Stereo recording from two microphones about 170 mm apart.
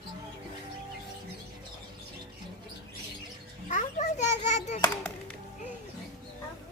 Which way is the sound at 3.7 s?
45° left (ahead or behind).